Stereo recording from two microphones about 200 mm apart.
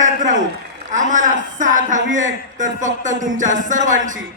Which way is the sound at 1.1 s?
40° right (ahead or behind).